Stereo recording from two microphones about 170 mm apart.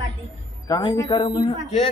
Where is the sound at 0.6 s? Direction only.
20° left (ahead or behind).